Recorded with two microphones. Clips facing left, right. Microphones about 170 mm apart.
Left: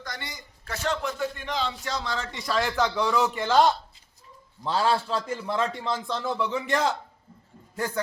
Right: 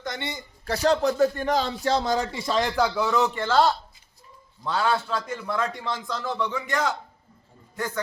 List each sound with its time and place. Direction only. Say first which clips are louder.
0.0 s a man's voice: right 6 dB; 25° right (ahead or behind); by 2.2 s 45° right (ahead or behind)
2.3 s speech: right 2 dB; 25° right (ahead or behind); by 3.3 s centre (ahead or behind)
3.3 s a man's voice: even; 15° left (ahead or behind)
4.6 s a man's voice: even; 30° left (ahead or behind)